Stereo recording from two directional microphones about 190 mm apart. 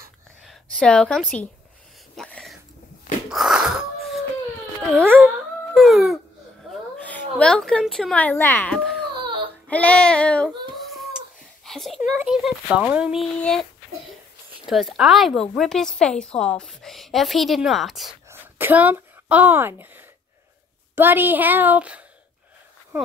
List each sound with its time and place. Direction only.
0.5 s a woman's voice: 5° left (ahead or behind)
2.1 s a sound: 5° left (ahead or behind)
3.3 s wail: centre (ahead or behind)
4.9 s a woman's voice: 10° right (ahead or behind)
5.8 s a sound: centre (ahead or behind)
6.7 s a woman's voice: 10° left (ahead or behind)
9.1 s baby cry: 25° right (ahead or behind)
9.7 s a woman's voice: 5° left (ahead or behind)
11.6 s a woman's voice: centre (ahead or behind)
14.7 s a woman's voice: centre (ahead or behind)
18.3 s a sound: 10° right (ahead or behind)
20.9 s a woman's voice: 10° right (ahead or behind)